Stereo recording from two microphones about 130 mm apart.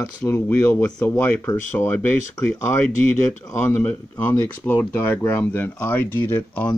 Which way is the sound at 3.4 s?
20° left (ahead or behind).